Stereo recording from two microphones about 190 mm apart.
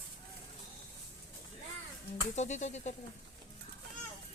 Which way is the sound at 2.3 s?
40° left (ahead or behind).